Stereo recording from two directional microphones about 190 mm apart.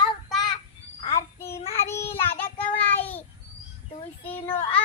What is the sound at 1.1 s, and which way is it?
Child singing, 15° left (ahead or behind).